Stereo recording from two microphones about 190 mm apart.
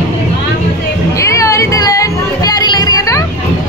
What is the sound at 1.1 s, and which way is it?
Music, 15° left (ahead or behind).